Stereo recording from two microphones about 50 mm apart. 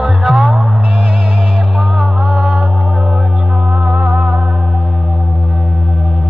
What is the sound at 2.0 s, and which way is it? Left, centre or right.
Music, centre.